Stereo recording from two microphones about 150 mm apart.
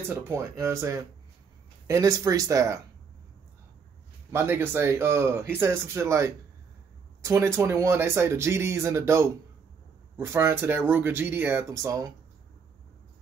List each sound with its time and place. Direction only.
0.1 s speech: 15° right (ahead or behind)
4.3 s speech: 15° right (ahead or behind)